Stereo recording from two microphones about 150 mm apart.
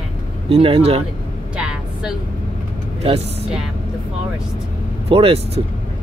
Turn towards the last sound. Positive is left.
turn(degrees=-40)  # may be behind; listen again after turning